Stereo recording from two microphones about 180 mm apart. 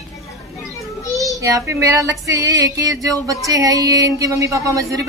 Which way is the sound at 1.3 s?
20° right (ahead or behind).